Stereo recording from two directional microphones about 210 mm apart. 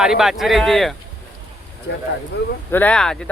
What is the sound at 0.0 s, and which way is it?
Speech, centre (ahead or behind).